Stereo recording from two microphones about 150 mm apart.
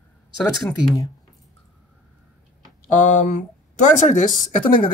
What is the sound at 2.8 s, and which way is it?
Speech, 60° left (ahead or behind).